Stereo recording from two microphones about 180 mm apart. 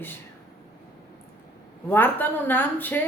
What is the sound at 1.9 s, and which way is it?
A woman's voice, 10° left (ahead or behind).